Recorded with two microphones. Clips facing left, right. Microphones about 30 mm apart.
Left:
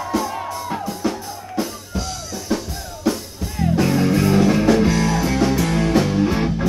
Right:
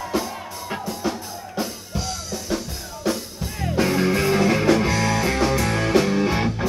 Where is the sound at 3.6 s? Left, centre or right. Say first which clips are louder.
Left 3 dB; centre.